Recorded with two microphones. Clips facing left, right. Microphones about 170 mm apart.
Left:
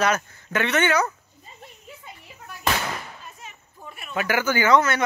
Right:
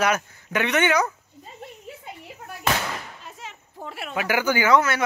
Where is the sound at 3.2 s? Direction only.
90° right.